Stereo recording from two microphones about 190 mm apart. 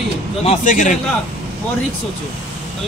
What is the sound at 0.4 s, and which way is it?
Speech, 35° left (ahead or behind).